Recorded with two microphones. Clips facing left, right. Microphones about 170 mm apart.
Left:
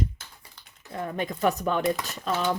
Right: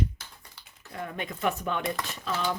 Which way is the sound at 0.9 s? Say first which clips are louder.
Left 5 dB; 30° left (ahead or behind).